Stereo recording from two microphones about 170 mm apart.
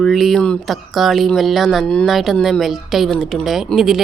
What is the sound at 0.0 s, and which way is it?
Speech, centre (ahead or behind).